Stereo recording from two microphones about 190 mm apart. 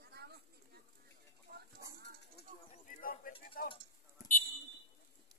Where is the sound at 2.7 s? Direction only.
45° left (ahead or behind).